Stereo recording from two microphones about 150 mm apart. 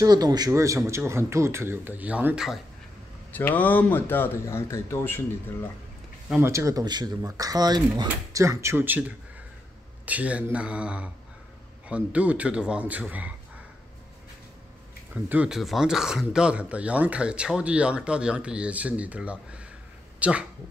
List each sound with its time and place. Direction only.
0.0 s speech: 25° right (ahead or behind); by 2.6 s 5° right (ahead or behind)
3.3 s speech: 10° left (ahead or behind)
6.4 s speech: 20° right (ahead or behind)
15.2 s speech: 10° right (ahead or behind)